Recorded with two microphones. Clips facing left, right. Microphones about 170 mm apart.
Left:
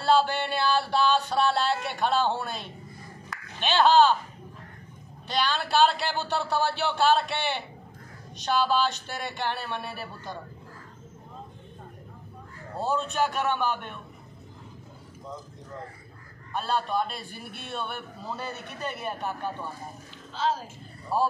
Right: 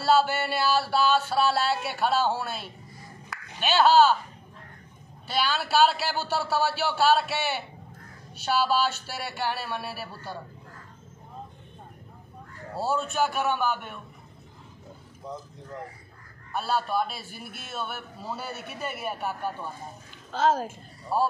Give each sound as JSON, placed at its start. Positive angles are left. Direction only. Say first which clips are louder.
{"t": 0.0, "sound": "music", "louder": "even", "side_deg": -5}
{"t": 3.3, "sound": "a sound", "louder": "right 1 dB", "side_deg": -5}
{"t": 5.3, "sound": "a man's voice", "louder": "even", "side_deg": -5}
{"t": 12.7, "sound": "a man's voice", "louder": "even", "side_deg": -5}
{"t": 16.5, "sound": "a man's voice", "louder": "right 1 dB", "side_deg": -5}
{"t": 20.2, "sound": "speech", "louder": "right 5 dB", "side_deg": -50}
{"t": 21.1, "sound": "a man's voice", "louder": "even", "side_deg": 0}